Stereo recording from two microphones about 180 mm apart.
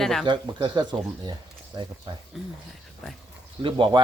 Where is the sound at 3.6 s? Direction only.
30° right (ahead or behind).